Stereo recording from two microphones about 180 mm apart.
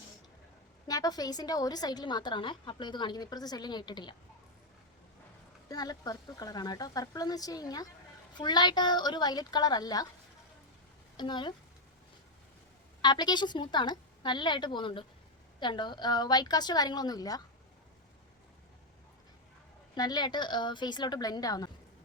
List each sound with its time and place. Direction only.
0.9 s a woman's voice: 20° left (ahead or behind)
5.6 s a woman's voice: 20° left (ahead or behind)
11.2 s a woman's voice: 25° left (ahead or behind)
13.0 s a woman's voice: 25° left (ahead or behind)
20.0 s a woman's voice: 20° left (ahead or behind)